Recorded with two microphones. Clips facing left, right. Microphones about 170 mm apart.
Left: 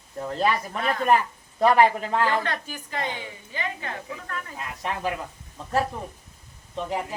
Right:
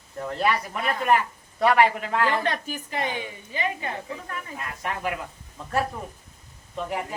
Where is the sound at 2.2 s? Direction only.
15° right (ahead or behind).